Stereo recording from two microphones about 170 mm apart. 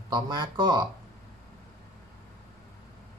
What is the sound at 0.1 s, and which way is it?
Speech, 25° right (ahead or behind).